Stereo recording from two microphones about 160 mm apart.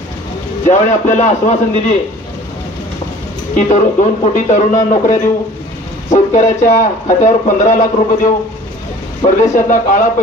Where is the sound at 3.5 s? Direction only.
50° left (ahead or behind).